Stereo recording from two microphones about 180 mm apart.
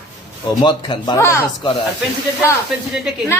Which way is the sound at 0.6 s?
25° left (ahead or behind).